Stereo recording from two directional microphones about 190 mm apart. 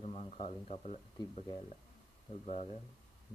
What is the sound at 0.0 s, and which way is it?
Speech, 35° left (ahead or behind).